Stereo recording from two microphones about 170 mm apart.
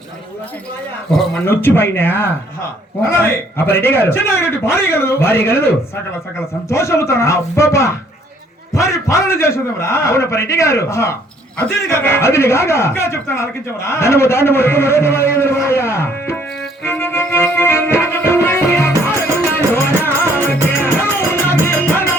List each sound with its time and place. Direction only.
1.5 s speech: 10° left (ahead or behind)
16.8 s music: 15° left (ahead or behind)